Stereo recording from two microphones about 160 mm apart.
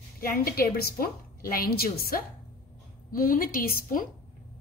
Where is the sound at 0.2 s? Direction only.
65° left (ahead or behind).